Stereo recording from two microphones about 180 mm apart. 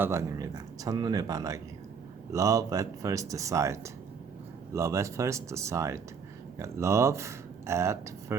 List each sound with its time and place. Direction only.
0.0 s speech: 15° right (ahead or behind)